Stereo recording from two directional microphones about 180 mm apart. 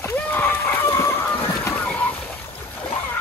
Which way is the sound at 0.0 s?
10° left (ahead or behind).